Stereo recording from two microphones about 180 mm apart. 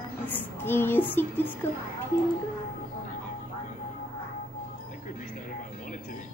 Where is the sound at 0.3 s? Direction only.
10° left (ahead or behind).